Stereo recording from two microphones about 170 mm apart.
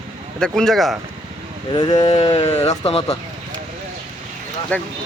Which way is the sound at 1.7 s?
25° left (ahead or behind).